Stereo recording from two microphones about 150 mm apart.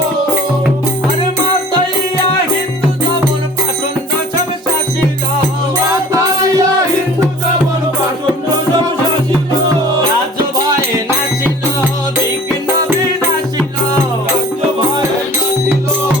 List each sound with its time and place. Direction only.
6.1 s music: 25° right (ahead or behind)